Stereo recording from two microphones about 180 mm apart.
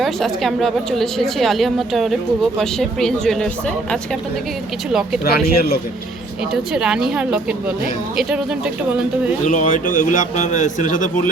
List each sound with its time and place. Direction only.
0.0 s a woman's voice: centre (ahead or behind)
4.9 s a woman's voice: 5° right (ahead or behind)
5.2 s speech: 60° left (ahead or behind)
6.5 s a woman's voice: 5° right (ahead or behind)
9.5 s a man's voice: 45° left (ahead or behind)